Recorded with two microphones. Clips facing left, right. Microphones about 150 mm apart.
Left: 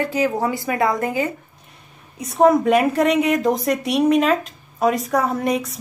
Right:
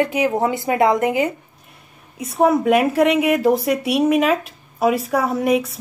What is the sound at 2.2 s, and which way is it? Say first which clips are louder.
Speech: left 1 dB; 5° right (ahead or behind).